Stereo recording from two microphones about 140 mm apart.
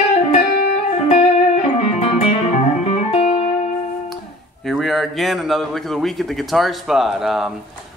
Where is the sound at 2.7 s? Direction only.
50° left (ahead or behind).